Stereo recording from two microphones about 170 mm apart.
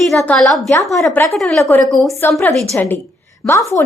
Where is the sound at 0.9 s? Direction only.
15° left (ahead or behind).